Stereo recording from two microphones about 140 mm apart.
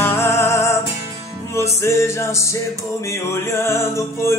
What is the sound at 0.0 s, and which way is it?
Music, 15° left (ahead or behind).